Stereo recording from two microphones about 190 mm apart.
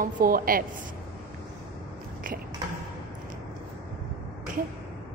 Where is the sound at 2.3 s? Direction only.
45° right (ahead or behind).